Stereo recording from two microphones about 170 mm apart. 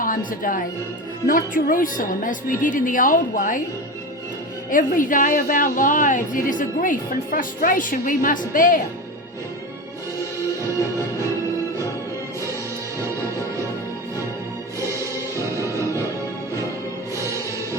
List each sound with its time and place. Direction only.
0.0 s a woman's voice: 55° left (ahead or behind)
4.7 s a woman's voice: 50° left (ahead or behind)
14.8 s music: 15° right (ahead or behind)
15.7 s music: 20° left (ahead or behind)